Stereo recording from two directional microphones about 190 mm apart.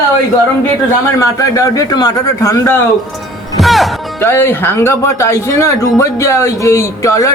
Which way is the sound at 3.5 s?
Centre (ahead or behind).